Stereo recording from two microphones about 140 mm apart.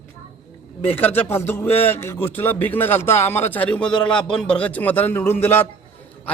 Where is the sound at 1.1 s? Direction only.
15° left (ahead or behind).